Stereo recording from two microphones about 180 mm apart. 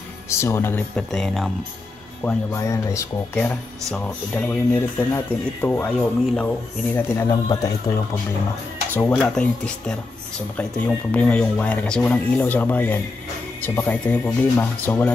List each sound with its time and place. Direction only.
0.3 s speech: 15° left (ahead or behind)
2.2 s speech: 15° left (ahead or behind)
8.9 s speech: 5° left (ahead or behind)